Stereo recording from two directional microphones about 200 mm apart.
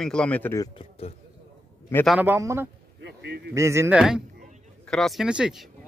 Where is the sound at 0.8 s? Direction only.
30° left (ahead or behind).